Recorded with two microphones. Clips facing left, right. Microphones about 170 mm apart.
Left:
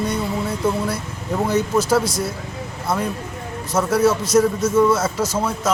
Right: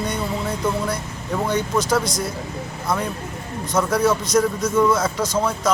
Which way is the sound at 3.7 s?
5° left (ahead or behind).